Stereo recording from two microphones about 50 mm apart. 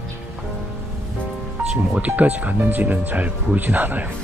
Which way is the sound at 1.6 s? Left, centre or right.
Centre.